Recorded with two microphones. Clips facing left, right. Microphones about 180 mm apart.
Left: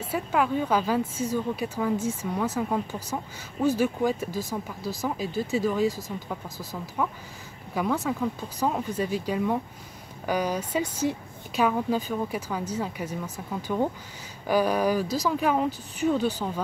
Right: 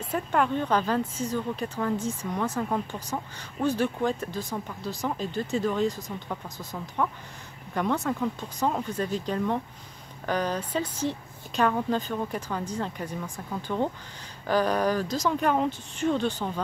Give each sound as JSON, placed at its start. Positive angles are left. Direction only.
{"t": 0.1, "sound": "a woman's voice", "side_deg": 5}
{"t": 7.7, "sound": "a woman's voice", "side_deg": 0}